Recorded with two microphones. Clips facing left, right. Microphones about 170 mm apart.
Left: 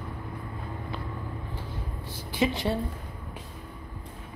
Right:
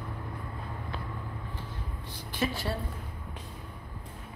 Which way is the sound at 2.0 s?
15° left (ahead or behind).